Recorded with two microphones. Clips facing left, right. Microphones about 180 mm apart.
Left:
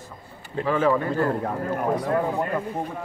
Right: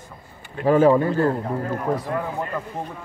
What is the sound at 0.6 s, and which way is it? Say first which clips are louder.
Speech: right 6 dB; 35° right (ahead or behind).